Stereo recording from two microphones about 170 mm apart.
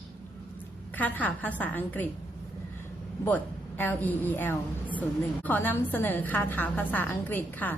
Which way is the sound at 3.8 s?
10° left (ahead or behind).